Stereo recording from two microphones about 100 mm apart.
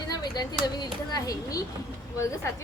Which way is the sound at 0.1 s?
45° left (ahead or behind).